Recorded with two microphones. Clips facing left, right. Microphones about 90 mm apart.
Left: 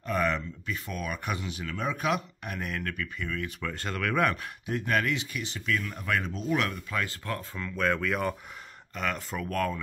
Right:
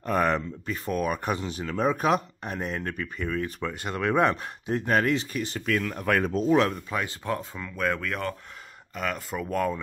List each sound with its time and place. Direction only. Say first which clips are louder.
0.0 s speech: right 4 dB; 45° right (ahead or behind)
3.6 s speech: right 3 dB; 20° right (ahead or behind); by 6.4 s 45° right (ahead or behind)
6.9 s speech: right 3 dB; 20° right (ahead or behind)
7.5 s speech: even; 5° right (ahead or behind)
9.5 s speech: right 3 dB; 15° right (ahead or behind)